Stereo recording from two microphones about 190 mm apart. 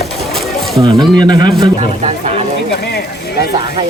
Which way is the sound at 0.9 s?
Centre (ahead or behind).